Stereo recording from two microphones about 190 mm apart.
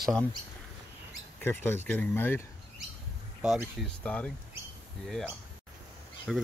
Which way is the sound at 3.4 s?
Centre (ahead or behind).